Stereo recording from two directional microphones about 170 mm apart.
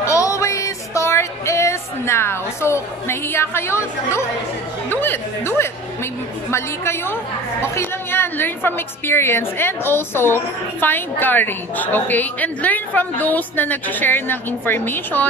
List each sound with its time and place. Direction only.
0.0 s music: 20° left (ahead or behind)
4.8 s a woman's voice: 10° left (ahead or behind)